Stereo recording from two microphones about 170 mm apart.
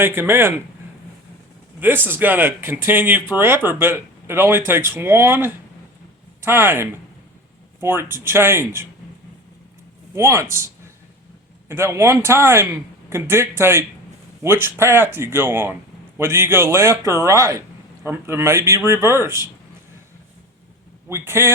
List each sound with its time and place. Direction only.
0.0 s speech: 15° right (ahead or behind)
1.8 s speech: 10° right (ahead or behind)
10.2 s speech: 15° right (ahead or behind)
11.7 s speech: 15° right (ahead or behind)
21.1 s speech: 15° right (ahead or behind)